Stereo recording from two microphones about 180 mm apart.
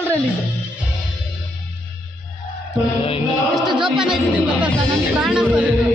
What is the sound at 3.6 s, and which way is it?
Speech, 25° right (ahead or behind).